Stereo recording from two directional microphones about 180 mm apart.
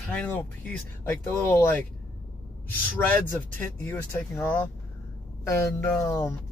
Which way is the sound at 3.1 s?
10° left (ahead or behind).